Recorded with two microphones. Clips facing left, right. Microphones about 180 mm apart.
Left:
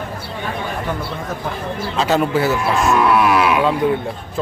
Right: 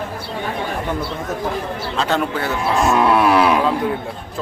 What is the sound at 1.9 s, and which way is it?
Speech, 5° left (ahead or behind).